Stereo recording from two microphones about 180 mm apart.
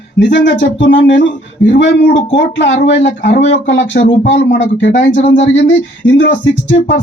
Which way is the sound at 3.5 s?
90° left.